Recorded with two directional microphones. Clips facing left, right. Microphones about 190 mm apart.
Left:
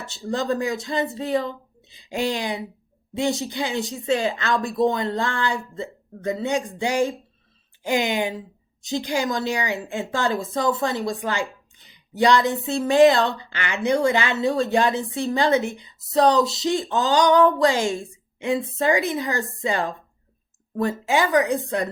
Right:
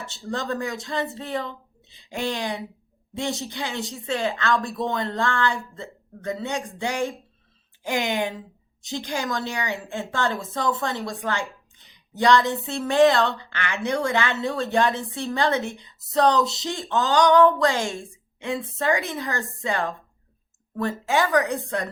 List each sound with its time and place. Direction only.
0.3 s speech: 10° left (ahead or behind)
11.0 s speech: 20° left (ahead or behind)
11.3 s a woman's voice: 10° left (ahead or behind)
17.9 s a sound: 10° left (ahead or behind)
18.8 s speech: 15° left (ahead or behind)